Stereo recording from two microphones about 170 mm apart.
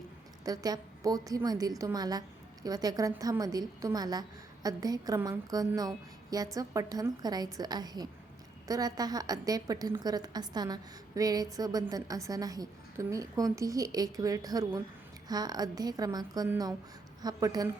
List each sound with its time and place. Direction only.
0.4 s a woman's voice: 20° right (ahead or behind)